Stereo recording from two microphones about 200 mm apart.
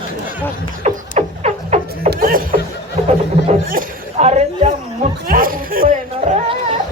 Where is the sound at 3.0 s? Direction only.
30° right (ahead or behind).